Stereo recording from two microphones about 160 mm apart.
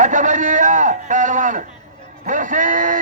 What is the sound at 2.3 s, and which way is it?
Speech, 55° right (ahead or behind).